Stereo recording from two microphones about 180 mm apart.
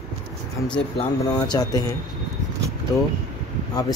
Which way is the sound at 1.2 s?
20° left (ahead or behind).